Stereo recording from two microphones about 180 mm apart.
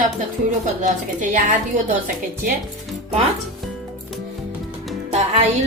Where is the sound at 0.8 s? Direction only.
40° right (ahead or behind).